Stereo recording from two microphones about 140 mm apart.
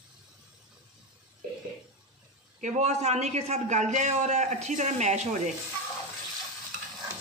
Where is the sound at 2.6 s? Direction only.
50° right (ahead or behind).